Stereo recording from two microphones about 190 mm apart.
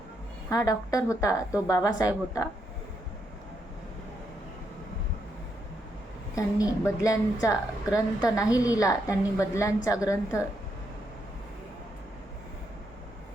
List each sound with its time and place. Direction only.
0.5 s a woman's voice: 20° left (ahead or behind)
6.3 s a woman's voice: 15° left (ahead or behind)